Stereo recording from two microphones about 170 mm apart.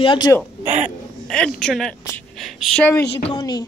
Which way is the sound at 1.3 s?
5° left (ahead or behind).